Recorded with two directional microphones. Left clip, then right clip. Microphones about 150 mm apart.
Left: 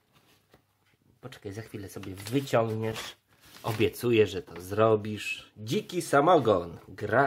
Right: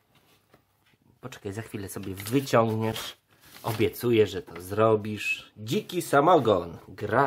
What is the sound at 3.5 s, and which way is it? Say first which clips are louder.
Speech: right 1 dB; centre (ahead or behind).